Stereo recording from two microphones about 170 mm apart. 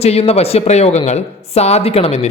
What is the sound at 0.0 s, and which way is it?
Speech, 35° left (ahead or behind).